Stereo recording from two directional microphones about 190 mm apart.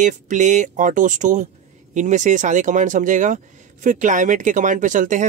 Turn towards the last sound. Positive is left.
turn(degrees=-40)  # may be behind; listen again after turning